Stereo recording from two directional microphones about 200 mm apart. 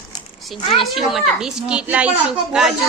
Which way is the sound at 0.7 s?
Centre (ahead or behind).